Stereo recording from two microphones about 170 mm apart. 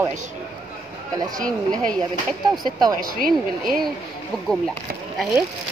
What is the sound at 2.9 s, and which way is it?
Speech, 60° right (ahead or behind).